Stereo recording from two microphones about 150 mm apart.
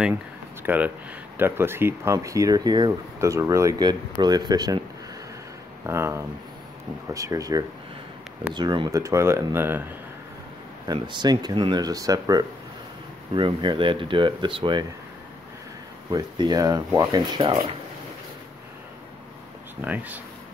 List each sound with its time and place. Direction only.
0.7 s speech: 10° right (ahead or behind); by 4.7 s 25° right (ahead or behind)
5.9 s speech: 15° right (ahead or behind)
11.0 s speech: 30° right (ahead or behind)
16.1 s speech: 25° right (ahead or behind)
19.8 s speech: 10° right (ahead or behind)